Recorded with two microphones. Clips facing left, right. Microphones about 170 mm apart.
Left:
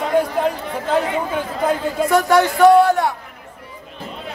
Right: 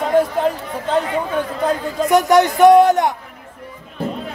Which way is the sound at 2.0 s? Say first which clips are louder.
Right 2 dB; 20° right (ahead or behind).